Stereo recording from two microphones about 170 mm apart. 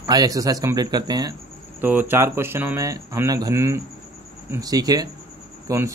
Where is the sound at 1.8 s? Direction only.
10° right (ahead or behind).